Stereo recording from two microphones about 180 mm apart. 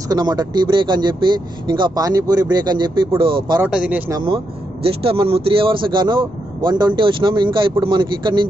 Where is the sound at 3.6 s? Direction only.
5° right (ahead or behind).